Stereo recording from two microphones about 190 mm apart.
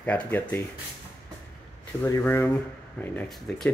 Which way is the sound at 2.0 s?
10° left (ahead or behind).